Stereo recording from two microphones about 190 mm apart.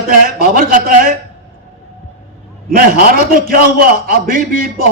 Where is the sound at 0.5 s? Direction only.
50° right (ahead or behind).